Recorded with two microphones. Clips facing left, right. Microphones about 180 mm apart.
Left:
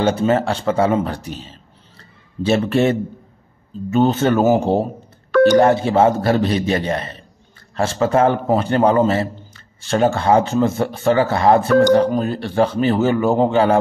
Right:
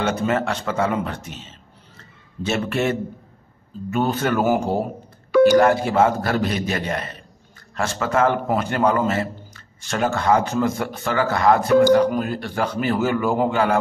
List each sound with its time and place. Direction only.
0.0 s speech: 30° left (ahead or behind)